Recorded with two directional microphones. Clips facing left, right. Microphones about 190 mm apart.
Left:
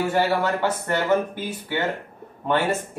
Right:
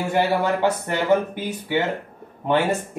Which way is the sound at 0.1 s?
15° right (ahead or behind).